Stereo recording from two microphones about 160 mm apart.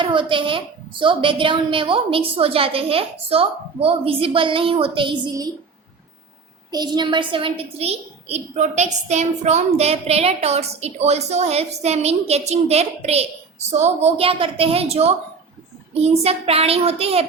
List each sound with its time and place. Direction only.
0.0 s a woman's voice: 30° right (ahead or behind)
6.7 s a woman's voice: 25° right (ahead or behind)